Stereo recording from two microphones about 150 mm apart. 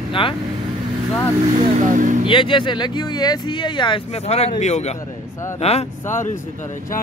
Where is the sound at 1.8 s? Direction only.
60° right (ahead or behind).